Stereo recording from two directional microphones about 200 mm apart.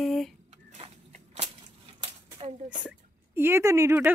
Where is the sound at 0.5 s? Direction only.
35° right (ahead or behind).